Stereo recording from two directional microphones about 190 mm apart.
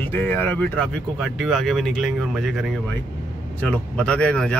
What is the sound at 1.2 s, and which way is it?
Speech, centre (ahead or behind).